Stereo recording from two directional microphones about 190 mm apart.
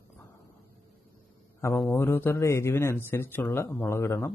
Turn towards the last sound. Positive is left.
turn(degrees=15)  # may be behind; listen again after turning